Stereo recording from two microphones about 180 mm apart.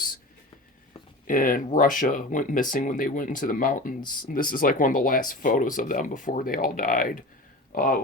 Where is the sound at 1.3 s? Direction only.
50° left (ahead or behind).